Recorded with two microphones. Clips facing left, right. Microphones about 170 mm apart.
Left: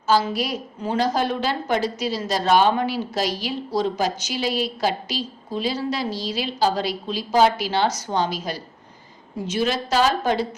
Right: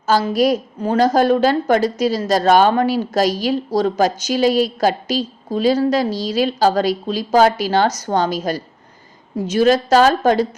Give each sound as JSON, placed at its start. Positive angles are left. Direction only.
{"t": 0.1, "sound": "a woman's voice", "side_deg": -45}